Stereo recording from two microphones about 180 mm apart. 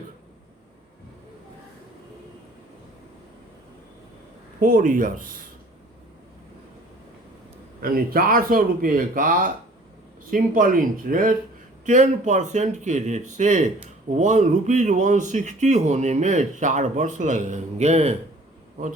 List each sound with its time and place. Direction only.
4.6 s speech: 50° right (ahead or behind)
7.8 s speech: 55° right (ahead or behind); by 18.2 s 35° right (ahead or behind)